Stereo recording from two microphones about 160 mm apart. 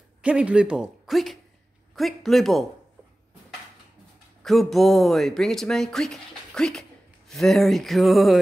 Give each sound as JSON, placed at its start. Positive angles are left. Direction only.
{"t": 0.2, "sound": "speech", "side_deg": -5}
{"t": 4.4, "sound": "speech", "side_deg": 0}